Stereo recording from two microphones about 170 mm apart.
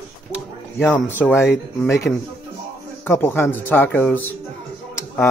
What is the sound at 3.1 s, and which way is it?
Speech, 15° left (ahead or behind).